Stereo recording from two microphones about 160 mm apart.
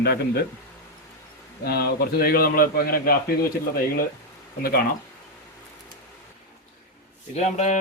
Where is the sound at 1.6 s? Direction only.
80° left.